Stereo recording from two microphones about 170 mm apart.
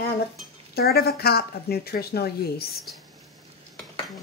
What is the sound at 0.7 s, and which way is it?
Speech, 65° left (ahead or behind).